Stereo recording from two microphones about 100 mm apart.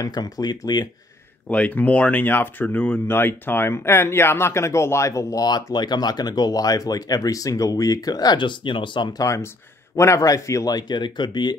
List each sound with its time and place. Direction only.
0.0 s speech: 45° left (ahead or behind)
1.5 s speech: 15° left (ahead or behind); by 9.2 s 50° left (ahead or behind)
9.2 s speech: 30° left (ahead or behind); by 11.5 s 50° left (ahead or behind)